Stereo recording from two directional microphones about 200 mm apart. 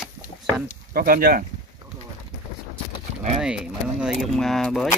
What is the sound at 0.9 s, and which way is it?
Speech, 45° right (ahead or behind).